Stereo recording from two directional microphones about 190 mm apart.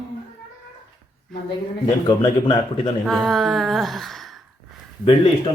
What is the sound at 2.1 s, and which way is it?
Speech, 25° left (ahead or behind).